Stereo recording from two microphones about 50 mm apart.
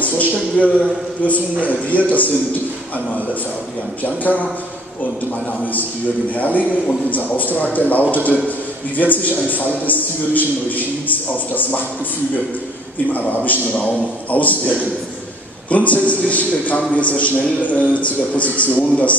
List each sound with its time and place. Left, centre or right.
0.0 s a sound: left
1.2 s a man's voice: left
4.0 s a man's voice: left
6.3 s a man's voice: left
13.1 s a man's voice: left